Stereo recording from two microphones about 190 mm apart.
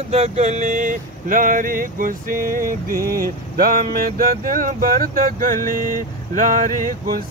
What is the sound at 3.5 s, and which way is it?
Speech, 50° right (ahead or behind).